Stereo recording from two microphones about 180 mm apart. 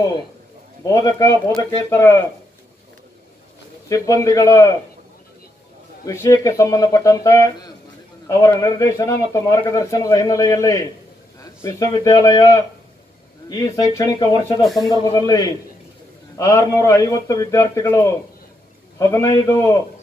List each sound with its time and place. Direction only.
0.8 s a man's voice: 20° left (ahead or behind)
3.9 s a man's voice: 20° left (ahead or behind)
6.0 s a man's voice: 20° left (ahead or behind)
13.5 s a man's voice: 20° left (ahead or behind)
14.6 s speech: centre (ahead or behind)
15.1 s a man's voice: 20° left (ahead or behind)